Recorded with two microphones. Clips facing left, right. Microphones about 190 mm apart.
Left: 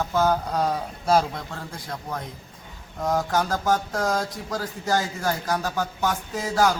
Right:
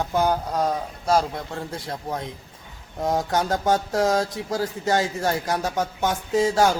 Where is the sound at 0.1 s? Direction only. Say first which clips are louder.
Even; 15° right (ahead or behind).